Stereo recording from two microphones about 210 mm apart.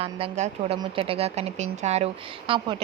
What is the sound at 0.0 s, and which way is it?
Speech, 30° right (ahead or behind).